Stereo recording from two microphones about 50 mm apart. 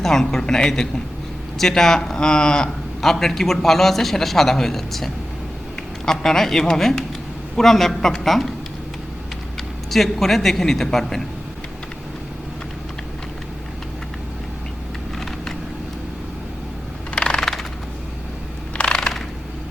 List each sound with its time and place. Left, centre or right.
0.0 s a man's voice: centre
9.9 s a man's voice: centre
17.2 s typing: centre
18.8 s a sound: centre